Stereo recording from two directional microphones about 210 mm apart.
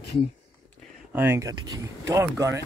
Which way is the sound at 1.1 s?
10° right (ahead or behind).